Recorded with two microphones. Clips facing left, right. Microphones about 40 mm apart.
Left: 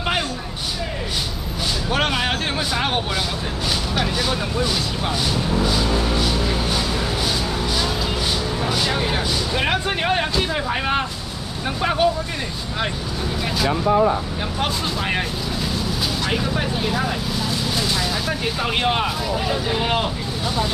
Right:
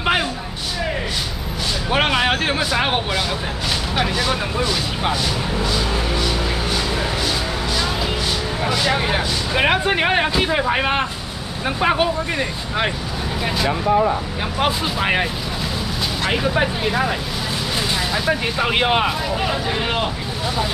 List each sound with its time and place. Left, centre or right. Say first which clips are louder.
1.9 s a sound: right 4 dB; right
3.9 s speech: right 4 dB; centre
8.6 s speech: right 4 dB; right
14.6 s speech: right 4 dB; centre
16.3 s speech: right 7 dB; right
18.1 s speech: right 3 dB; centre